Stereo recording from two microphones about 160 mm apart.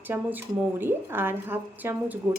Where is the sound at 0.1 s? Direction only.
15° right (ahead or behind).